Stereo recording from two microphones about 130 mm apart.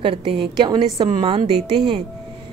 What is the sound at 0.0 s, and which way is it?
A woman's voice, 40° right (ahead or behind).